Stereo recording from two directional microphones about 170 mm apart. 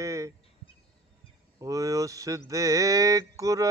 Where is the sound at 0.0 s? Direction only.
20° right (ahead or behind).